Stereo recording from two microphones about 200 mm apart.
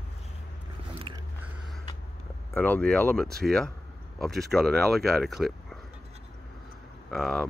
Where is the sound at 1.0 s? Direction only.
25° right (ahead or behind).